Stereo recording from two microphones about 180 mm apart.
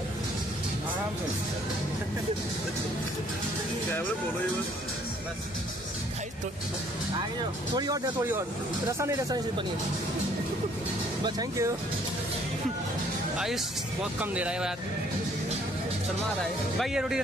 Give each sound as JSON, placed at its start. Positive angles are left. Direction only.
{"t": 7.7, "sound": "speech", "side_deg": -20}
{"t": 11.2, "sound": "speech", "side_deg": -20}
{"t": 14.2, "sound": "speech", "side_deg": -5}
{"t": 16.7, "sound": "speech", "side_deg": 0}